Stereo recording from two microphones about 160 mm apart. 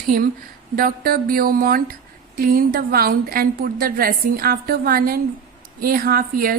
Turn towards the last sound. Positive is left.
turn(degrees=-65)  # may be behind; listen again after turning